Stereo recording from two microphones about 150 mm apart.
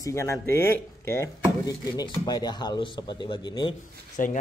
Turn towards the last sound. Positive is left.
turn(degrees=60)  # may be behind; listen again after turning